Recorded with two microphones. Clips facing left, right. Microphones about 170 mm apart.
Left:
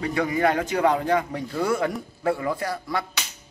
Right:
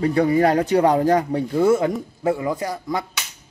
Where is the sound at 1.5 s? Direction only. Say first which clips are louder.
Right 6 dB; 25° right (ahead or behind).